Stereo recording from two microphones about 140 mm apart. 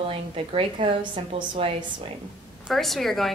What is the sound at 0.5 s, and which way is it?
A woman's voice, 40° right (ahead or behind).